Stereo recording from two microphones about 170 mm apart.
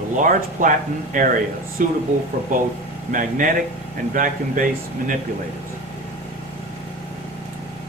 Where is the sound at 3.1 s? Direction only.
50° right (ahead or behind).